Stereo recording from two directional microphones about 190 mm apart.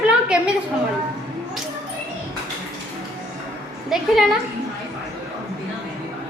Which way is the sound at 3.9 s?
Centre (ahead or behind).